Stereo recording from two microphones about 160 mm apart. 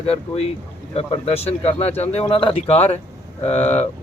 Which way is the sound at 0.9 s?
35° left (ahead or behind).